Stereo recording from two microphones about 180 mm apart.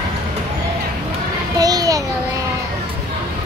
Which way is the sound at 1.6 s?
20° right (ahead or behind).